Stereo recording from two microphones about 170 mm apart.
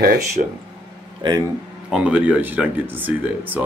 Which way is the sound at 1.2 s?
25° right (ahead or behind).